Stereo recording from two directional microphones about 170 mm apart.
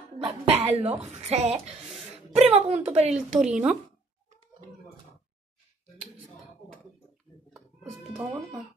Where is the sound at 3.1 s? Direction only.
5° right (ahead or behind).